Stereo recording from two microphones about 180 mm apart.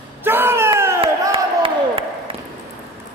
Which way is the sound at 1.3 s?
30° right (ahead or behind).